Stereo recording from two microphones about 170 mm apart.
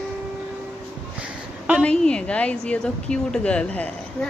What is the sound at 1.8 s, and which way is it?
A woman's voice, 5° left (ahead or behind).